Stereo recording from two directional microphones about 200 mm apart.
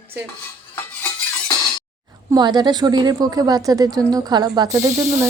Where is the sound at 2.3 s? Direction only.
20° right (ahead or behind).